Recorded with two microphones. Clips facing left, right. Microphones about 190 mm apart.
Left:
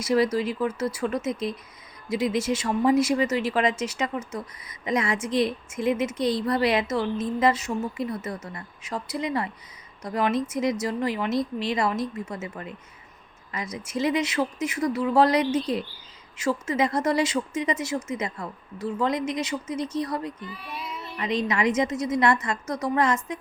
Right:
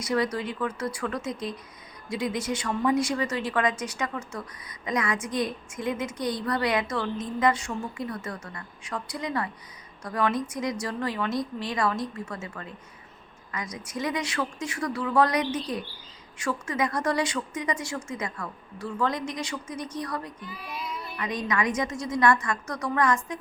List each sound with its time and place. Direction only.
0.0 s a woman's voice: 25° left (ahead or behind)